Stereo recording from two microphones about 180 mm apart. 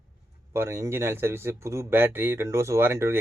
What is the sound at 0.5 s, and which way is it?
Speech, 15° right (ahead or behind).